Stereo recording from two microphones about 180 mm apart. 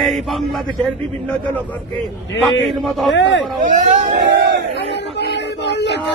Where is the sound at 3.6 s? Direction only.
45° right (ahead or behind).